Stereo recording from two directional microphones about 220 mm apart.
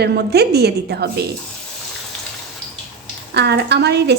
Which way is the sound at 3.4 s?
50° right (ahead or behind).